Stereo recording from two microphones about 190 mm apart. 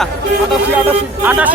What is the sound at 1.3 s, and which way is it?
Speech, 10° right (ahead or behind).